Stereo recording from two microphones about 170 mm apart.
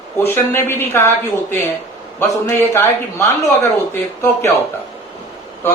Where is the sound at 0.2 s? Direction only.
15° left (ahead or behind).